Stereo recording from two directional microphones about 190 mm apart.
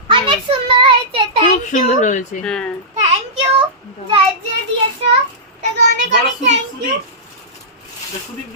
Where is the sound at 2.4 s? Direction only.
5° left (ahead or behind).